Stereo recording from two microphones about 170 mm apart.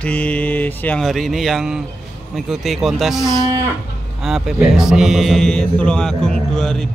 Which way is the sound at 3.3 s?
25° right (ahead or behind).